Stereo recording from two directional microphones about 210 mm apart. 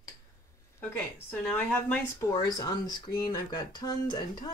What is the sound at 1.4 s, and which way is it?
Speech, 10° left (ahead or behind).